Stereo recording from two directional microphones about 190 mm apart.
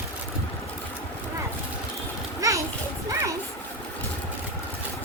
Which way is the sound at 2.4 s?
15° right (ahead or behind).